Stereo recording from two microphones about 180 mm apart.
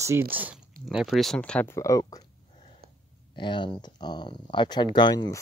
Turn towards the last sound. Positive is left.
turn(degrees=25)  # may be behind; listen again after turning